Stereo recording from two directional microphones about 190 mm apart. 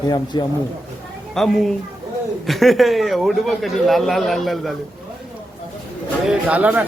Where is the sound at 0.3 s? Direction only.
20° left (ahead or behind).